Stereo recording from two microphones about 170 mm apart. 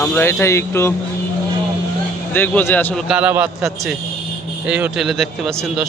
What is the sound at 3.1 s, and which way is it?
Speech, 10° right (ahead or behind).